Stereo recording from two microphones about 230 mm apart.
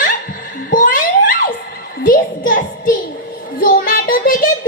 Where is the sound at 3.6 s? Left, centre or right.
Left.